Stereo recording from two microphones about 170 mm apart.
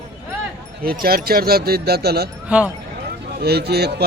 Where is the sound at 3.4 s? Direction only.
70° right (ahead or behind).